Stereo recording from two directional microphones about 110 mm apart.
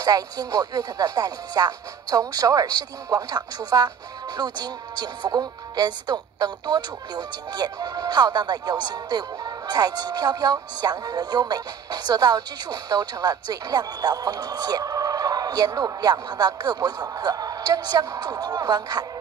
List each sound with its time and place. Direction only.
0.0 s speech: 35° right (ahead or behind)